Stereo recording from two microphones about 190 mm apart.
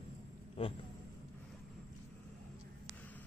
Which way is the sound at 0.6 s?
30° left (ahead or behind).